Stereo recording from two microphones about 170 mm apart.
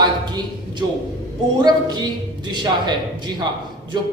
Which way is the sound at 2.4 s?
25° right (ahead or behind).